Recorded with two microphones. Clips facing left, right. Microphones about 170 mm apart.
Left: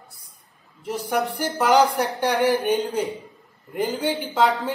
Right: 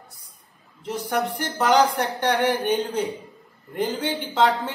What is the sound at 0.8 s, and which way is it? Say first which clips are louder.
A man's voice: left 1 dB; 10° left (ahead or behind).